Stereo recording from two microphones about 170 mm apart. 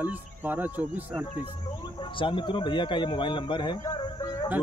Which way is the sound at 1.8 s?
30° left (ahead or behind).